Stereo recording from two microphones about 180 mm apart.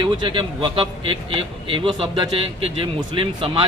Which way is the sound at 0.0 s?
25° right (ahead or behind).